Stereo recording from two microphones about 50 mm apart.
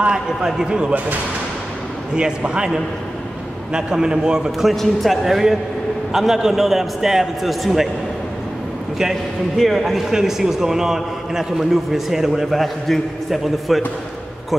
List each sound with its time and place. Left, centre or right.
0.0 s a man's voice: centre
2.1 s a man's voice: centre
3.7 s a man's voice: centre
4.5 s a man's voice: centre
9.6 s a man's voice: centre